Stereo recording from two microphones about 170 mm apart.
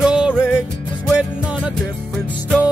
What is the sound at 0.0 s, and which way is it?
Music, 5° right (ahead or behind).